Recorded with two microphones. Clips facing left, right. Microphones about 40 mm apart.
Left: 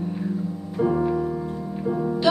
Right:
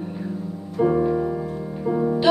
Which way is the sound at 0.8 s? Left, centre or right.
Centre.